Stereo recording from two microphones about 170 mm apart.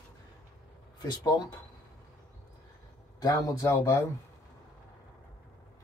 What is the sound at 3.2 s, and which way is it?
Speech, 20° left (ahead or behind).